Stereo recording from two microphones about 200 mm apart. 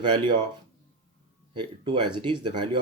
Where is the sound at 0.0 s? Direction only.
25° right (ahead or behind).